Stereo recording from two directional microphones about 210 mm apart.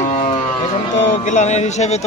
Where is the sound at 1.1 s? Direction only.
35° left (ahead or behind).